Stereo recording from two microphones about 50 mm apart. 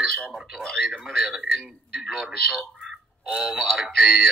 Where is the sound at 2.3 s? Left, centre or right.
Centre.